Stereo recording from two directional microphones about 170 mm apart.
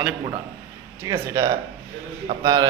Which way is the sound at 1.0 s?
15° right (ahead or behind).